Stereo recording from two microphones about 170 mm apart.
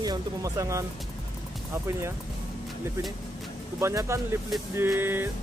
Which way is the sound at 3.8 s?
15° right (ahead or behind).